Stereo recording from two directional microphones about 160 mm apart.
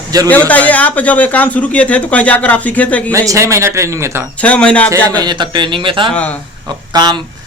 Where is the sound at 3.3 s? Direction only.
20° right (ahead or behind).